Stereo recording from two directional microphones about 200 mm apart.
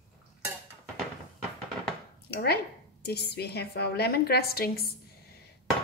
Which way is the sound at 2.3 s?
55° left (ahead or behind).